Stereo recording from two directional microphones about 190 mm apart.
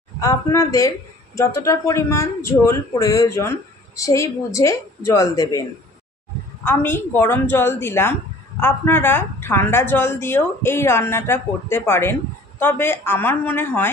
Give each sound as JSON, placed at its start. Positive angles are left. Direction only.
{"t": 0.2, "sound": "speech", "side_deg": 15}
{"t": 6.6, "sound": "speech", "side_deg": 10}